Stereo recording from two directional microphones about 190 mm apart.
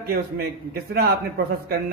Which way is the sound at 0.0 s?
55° right (ahead or behind).